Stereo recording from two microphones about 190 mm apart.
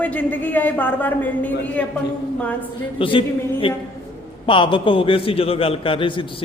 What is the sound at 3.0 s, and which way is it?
A man's voice, 25° left (ahead or behind).